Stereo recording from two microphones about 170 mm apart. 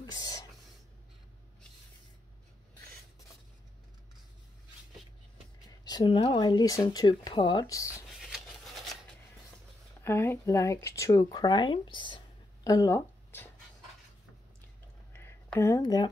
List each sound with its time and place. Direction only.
0.0 s whispering: 20° left (ahead or behind)
5.9 s speech: 25° left (ahead or behind)
8.1 s scissors: centre (ahead or behind)
10.0 s speech: 15° left (ahead or behind)
12.6 s a sound: 20° left (ahead or behind)
15.5 s speech: 20° left (ahead or behind)